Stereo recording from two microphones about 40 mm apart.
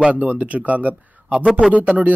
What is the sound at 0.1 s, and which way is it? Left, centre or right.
Speech, right.